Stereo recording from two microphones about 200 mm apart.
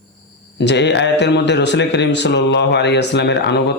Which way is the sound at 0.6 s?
60° left (ahead or behind).